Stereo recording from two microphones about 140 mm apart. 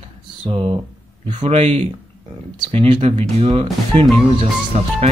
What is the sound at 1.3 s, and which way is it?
Speech, 50° right (ahead or behind).